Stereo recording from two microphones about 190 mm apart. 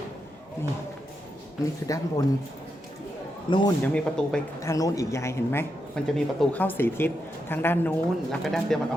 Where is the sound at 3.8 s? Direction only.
5° left (ahead or behind).